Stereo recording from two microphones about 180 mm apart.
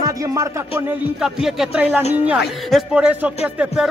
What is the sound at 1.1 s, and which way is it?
A man's voice, 5° right (ahead or behind).